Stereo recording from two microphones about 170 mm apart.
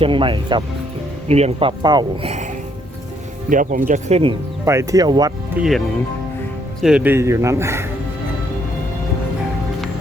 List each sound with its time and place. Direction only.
0.0 s speech: 30° right (ahead or behind)
1.3 s speech: 40° right (ahead or behind)
3.5 s speech: 50° right (ahead or behind)
4.6 s speech: 15° right (ahead or behind)
5.5 s speech: centre (ahead or behind)
6.8 s speech: 10° right (ahead or behind)